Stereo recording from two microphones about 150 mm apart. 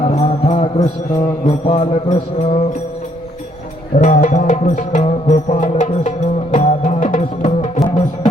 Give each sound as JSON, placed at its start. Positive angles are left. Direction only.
{"t": 0.1, "sound": "music", "side_deg": 45}
{"t": 1.5, "sound": "mantra", "side_deg": 45}
{"t": 3.9, "sound": "music", "side_deg": 55}
{"t": 7.4, "sound": "music", "side_deg": 45}